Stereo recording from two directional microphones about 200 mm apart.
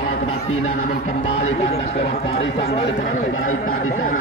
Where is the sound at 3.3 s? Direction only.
90° left.